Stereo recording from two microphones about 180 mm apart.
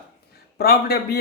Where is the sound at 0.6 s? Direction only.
60° left (ahead or behind).